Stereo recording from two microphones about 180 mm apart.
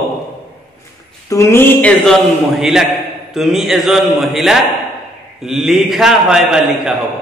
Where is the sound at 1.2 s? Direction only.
15° left (ahead or behind).